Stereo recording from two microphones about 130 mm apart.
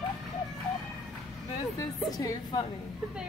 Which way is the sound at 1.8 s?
30° left (ahead or behind).